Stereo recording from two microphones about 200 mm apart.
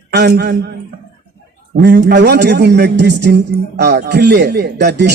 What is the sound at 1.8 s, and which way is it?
Speech, 55° right (ahead or behind).